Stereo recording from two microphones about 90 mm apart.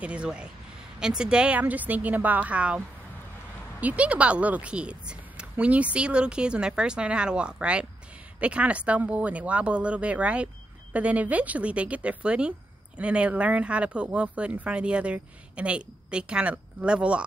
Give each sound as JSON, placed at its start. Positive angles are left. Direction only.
{"t": 0.0, "sound": "speech", "side_deg": -10}
{"t": 3.8, "sound": "speech", "side_deg": -15}